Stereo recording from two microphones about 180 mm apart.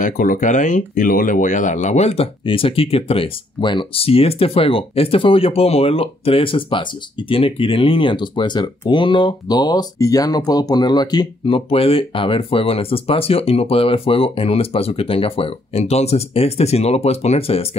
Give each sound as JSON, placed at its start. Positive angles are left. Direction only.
{"t": 0.0, "sound": "speech", "side_deg": 45}